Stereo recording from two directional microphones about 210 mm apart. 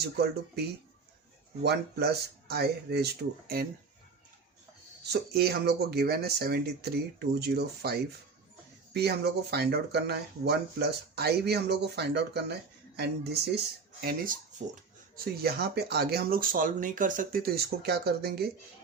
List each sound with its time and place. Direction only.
0.0 s speech: 50° right (ahead or behind)
1.6 s speech: 50° right (ahead or behind)
5.1 s speech: 50° right (ahead or behind)